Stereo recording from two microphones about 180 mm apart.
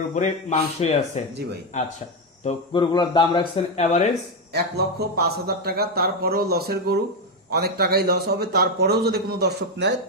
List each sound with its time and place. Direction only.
0.1 s speech: 40° left (ahead or behind)
4.5 s speech: 65° right (ahead or behind)